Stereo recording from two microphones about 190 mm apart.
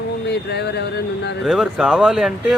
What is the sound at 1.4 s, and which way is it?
Speech, 5° right (ahead or behind).